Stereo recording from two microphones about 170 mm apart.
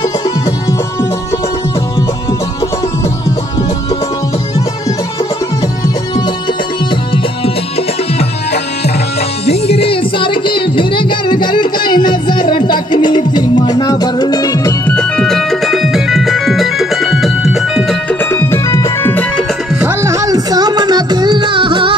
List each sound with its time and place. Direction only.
9.5 s music: 35° left (ahead or behind); by 15.0 s 20° left (ahead or behind)
15.0 s music: 5° left (ahead or behind)
18.3 s music: 20° left (ahead or behind)
19.8 s music: 15° right (ahead or behind)